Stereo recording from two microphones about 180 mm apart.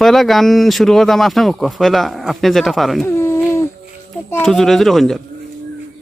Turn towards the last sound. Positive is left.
turn(degrees=0)  # may be behind; listen again after turning